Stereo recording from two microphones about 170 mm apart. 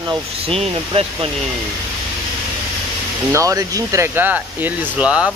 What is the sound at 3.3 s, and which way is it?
Speech, 20° right (ahead or behind).